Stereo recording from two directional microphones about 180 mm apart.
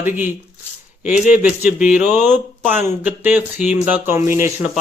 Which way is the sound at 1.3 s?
50° left (ahead or behind).